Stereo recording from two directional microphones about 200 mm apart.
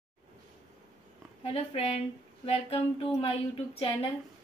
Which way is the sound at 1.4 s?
30° left (ahead or behind).